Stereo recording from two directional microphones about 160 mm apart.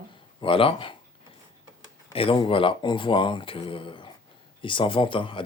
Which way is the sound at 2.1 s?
35° left (ahead or behind).